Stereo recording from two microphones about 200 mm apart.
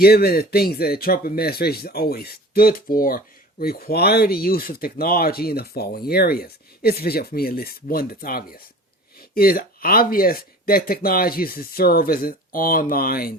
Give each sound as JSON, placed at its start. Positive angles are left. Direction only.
{"t": 0.0, "sound": "speech", "side_deg": 50}